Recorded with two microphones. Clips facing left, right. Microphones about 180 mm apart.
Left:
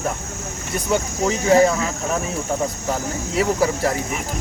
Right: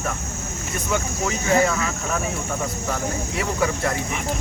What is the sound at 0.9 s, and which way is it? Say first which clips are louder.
Speech: left 4 dB; 35° left (ahead or behind).